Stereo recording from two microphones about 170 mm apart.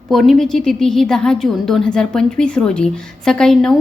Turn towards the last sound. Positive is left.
turn(degrees=0)  # may be behind; listen again after turning